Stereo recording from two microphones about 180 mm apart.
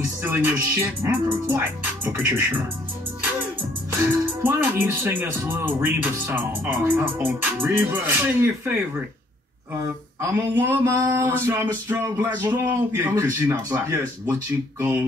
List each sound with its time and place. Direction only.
0.2 s speech: 10° right (ahead or behind)
4.0 s speech: 10° right (ahead or behind)
10.3 s speech: 15° right (ahead or behind)